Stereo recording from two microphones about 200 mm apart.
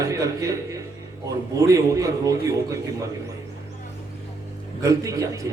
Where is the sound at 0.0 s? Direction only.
15° right (ahead or behind).